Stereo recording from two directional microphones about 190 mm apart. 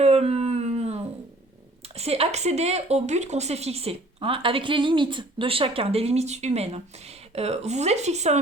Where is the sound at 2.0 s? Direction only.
35° right (ahead or behind).